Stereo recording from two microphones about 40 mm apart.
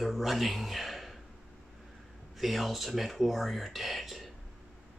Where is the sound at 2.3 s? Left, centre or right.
Centre.